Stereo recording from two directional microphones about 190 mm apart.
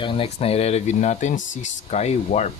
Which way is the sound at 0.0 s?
30° left (ahead or behind).